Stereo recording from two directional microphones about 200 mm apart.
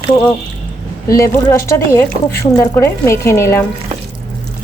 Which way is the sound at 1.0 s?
15° left (ahead or behind).